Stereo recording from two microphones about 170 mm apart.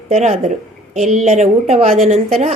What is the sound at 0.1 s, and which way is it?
A woman's voice, 40° right (ahead or behind).